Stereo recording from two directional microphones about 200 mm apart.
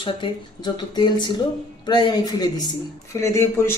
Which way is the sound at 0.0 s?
25° left (ahead or behind).